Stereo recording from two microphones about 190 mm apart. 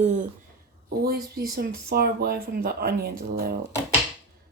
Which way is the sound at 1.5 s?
55° right (ahead or behind).